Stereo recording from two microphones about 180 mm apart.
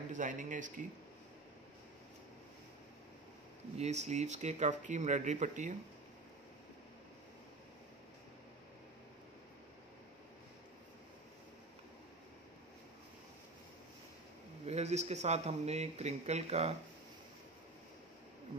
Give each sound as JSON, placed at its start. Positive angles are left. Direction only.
{"t": 0.1, "sound": "speech", "side_deg": -45}
{"t": 3.7, "sound": "speech", "side_deg": -40}
{"t": 14.7, "sound": "speech", "side_deg": -35}